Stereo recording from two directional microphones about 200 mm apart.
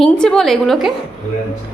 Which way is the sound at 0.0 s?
5° left (ahead or behind).